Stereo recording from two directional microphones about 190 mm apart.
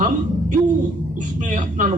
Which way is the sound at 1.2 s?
40° right (ahead or behind).